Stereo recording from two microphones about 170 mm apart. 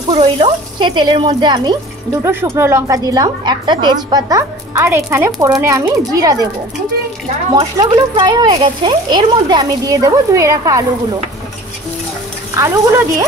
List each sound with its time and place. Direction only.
0.1 s a woman's voice: 35° right (ahead or behind)
7.5 s a woman's voice: 25° right (ahead or behind)
12.5 s a woman's voice: 20° right (ahead or behind)